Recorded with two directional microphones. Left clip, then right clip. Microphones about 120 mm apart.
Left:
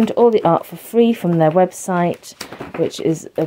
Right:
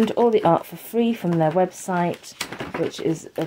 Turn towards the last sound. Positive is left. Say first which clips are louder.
# left 5 dB
turn(degrees=60)  # may be behind; listen again after turning